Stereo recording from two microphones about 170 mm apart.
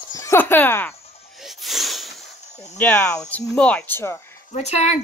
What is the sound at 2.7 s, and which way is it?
Speech, 10° left (ahead or behind).